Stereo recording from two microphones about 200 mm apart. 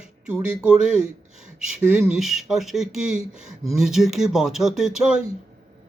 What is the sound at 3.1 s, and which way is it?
Speech, 30° left (ahead or behind).